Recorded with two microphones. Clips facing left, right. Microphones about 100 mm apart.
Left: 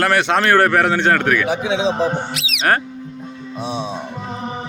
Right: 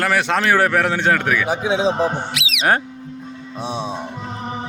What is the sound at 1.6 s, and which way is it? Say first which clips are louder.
Speech: right 1 dB; 40° right (ahead or behind).